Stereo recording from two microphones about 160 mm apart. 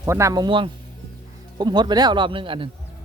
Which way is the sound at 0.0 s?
20° right (ahead or behind).